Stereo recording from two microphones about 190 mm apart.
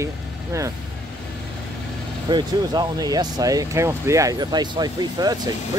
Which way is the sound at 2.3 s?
20° right (ahead or behind).